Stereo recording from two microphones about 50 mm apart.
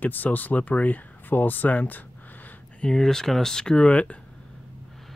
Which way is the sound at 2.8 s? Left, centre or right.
Centre.